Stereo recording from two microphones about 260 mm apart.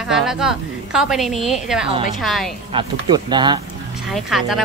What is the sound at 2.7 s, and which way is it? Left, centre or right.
Speech, centre.